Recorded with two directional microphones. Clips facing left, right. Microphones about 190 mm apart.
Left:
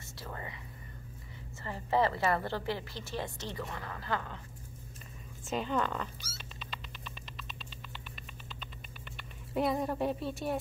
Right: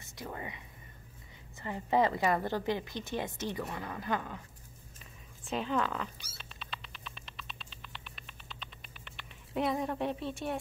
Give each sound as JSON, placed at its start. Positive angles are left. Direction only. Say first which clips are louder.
{"t": 0.0, "sound": "speech", "louder": "right 2 dB", "side_deg": -15}
{"t": 1.6, "sound": "a woman's voice", "louder": "right 1 dB", "side_deg": -15}
{"t": 5.4, "sound": "speech", "louder": "even", "side_deg": 0}
{"t": 6.3, "sound": "a sound", "louder": "left 1 dB", "side_deg": 0}